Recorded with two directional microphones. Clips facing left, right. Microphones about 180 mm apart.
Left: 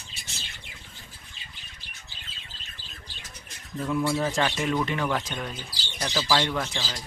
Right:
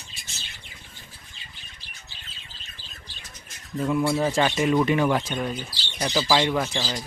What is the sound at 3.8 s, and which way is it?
A man's voice, 10° right (ahead or behind).